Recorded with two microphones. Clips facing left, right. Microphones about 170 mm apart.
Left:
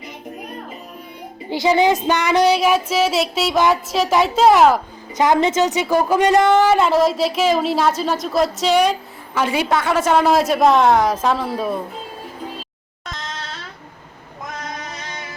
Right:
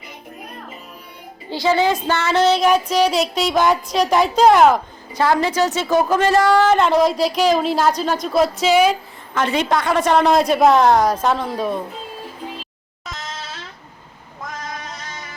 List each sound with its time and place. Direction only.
1.5 s speech: 15° left (ahead or behind); by 4.8 s centre (ahead or behind)
5.1 s a woman's voice: 20° left (ahead or behind)
6.7 s speech: 5° left (ahead or behind)
9.3 s speech: 10° left (ahead or behind)
13.1 s a sound: 5° right (ahead or behind)